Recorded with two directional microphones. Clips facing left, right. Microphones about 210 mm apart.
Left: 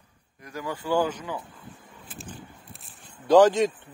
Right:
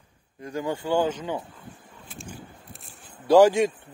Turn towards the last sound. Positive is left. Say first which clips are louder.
# right 1 dB
turn(degrees=-10)  # may be behind; listen again after turning